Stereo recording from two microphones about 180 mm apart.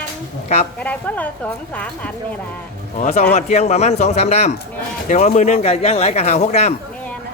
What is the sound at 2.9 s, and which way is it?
A man's voice, 45° left (ahead or behind).